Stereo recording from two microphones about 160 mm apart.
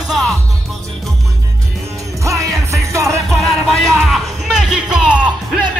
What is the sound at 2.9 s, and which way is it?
Music, 20° right (ahead or behind).